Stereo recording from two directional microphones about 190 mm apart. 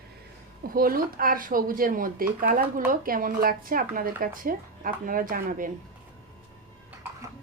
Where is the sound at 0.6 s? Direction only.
50° right (ahead or behind).